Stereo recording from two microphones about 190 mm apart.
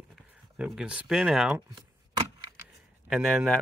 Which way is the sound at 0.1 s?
Centre (ahead or behind).